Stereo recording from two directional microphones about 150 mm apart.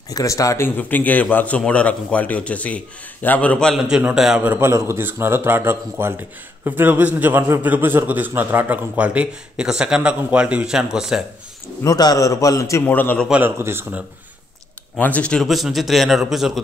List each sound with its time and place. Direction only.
0.1 s a man's voice: 20° left (ahead or behind); by 11.2 s 5° right (ahead or behind)
11.8 s a man's voice: 25° left (ahead or behind)
13.3 s a man's voice: 15° right (ahead or behind)
15.0 s speech: 10° left (ahead or behind)